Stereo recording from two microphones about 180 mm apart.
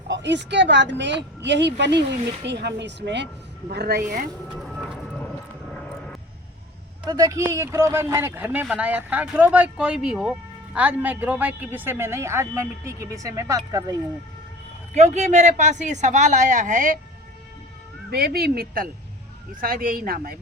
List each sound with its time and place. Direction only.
0.1 s speech: 80° right
3.7 s speech: 60° right (ahead or behind)
4.6 s a sound: centre (ahead or behind)
5.7 s vehicle: 5° left (ahead or behind)
7.0 s a woman's voice: 20° right (ahead or behind)
14.9 s speech: 40° right (ahead or behind)
18.1 s speech: 60° right (ahead or behind)